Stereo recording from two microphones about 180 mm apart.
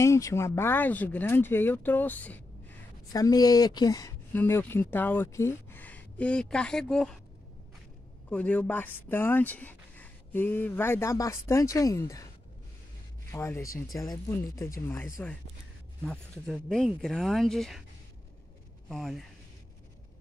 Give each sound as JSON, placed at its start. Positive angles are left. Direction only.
{"t": 0.0, "sound": "speech", "side_deg": 15}
{"t": 3.1, "sound": "speech", "side_deg": 20}
{"t": 8.3, "sound": "speech", "side_deg": 5}
{"t": 13.3, "sound": "speech", "side_deg": 15}
{"t": 16.1, "sound": "speech", "side_deg": 5}
{"t": 18.9, "sound": "speech", "side_deg": 0}